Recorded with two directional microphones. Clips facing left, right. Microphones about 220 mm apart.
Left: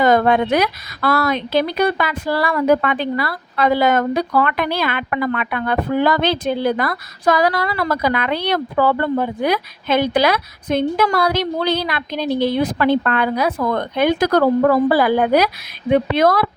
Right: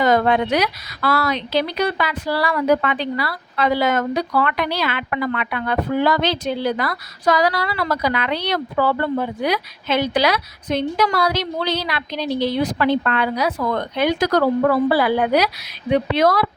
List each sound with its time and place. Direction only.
0.0 s speech: 50° left (ahead or behind)